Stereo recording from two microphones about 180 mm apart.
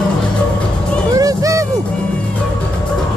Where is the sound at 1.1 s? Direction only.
20° right (ahead or behind).